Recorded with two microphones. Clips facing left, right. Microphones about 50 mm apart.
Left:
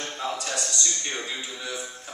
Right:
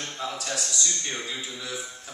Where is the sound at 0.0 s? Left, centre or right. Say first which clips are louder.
Left 2 dB; centre.